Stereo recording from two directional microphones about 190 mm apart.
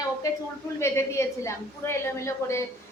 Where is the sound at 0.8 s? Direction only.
15° left (ahead or behind).